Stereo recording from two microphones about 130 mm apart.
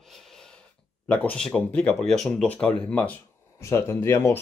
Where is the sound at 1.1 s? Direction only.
10° left (ahead or behind).